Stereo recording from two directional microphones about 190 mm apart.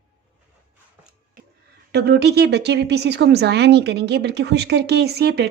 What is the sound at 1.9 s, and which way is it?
Speech, 60° right (ahead or behind).